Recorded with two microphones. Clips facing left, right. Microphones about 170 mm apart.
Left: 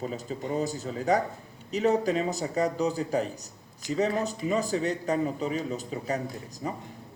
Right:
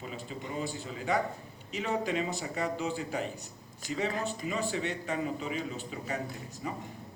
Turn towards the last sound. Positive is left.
turn(degrees=40)  # may be behind; listen again after turning